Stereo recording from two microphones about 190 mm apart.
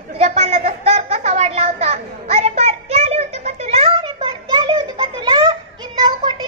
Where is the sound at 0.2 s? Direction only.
35° right (ahead or behind).